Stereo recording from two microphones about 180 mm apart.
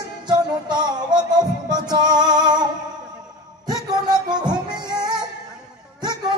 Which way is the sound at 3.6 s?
25° right (ahead or behind).